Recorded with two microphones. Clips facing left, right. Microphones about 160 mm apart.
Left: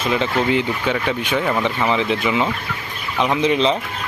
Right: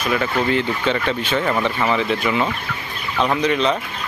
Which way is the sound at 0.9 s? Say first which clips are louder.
Even; 10° left (ahead or behind).